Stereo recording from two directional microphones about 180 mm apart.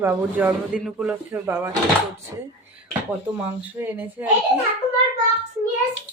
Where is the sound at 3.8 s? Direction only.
10° right (ahead or behind).